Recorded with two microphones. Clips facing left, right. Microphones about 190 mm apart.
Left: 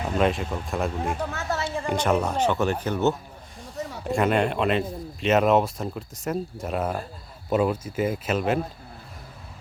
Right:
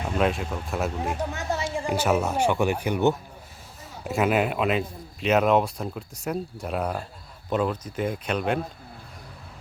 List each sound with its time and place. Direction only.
0.2 s a man's voice: centre (ahead or behind)
1.3 s a sound: 15° right (ahead or behind)
1.9 s a man's voice: 5° right (ahead or behind)